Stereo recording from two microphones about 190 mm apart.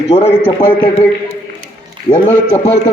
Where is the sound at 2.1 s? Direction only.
25° left (ahead or behind).